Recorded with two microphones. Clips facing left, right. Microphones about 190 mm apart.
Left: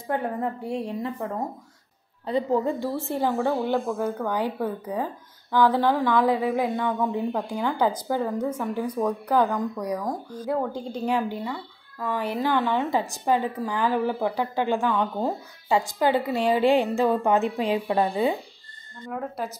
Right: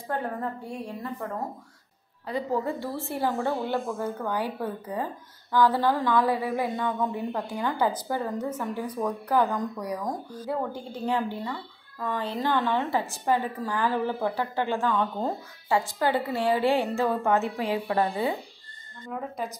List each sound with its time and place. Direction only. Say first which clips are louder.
0.1 s a woman's voice: left 4 dB; 20° left (ahead or behind)
2.2 s a woman's voice: left 5 dB; 25° left (ahead or behind)
19.1 s speech: left 2 dB; 5° left (ahead or behind)